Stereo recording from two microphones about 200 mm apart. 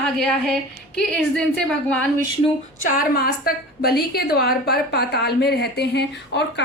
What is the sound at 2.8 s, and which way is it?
A woman's voice, 45° left (ahead or behind).